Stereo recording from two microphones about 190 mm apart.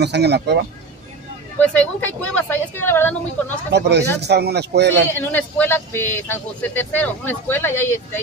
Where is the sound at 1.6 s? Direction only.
5° left (ahead or behind).